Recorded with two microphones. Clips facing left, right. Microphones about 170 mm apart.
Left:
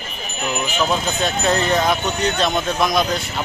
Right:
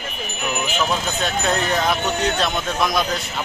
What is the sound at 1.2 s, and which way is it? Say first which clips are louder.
Speech: left 3 dB; centre (ahead or behind).